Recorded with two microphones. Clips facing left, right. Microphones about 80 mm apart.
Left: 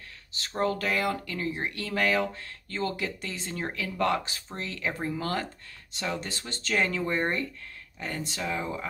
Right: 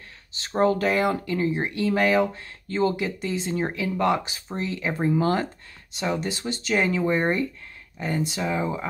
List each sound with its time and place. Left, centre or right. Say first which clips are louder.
0.3 s speech: right 7 dB; right